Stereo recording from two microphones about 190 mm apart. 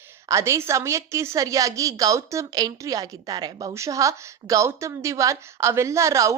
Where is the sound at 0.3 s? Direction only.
15° right (ahead or behind).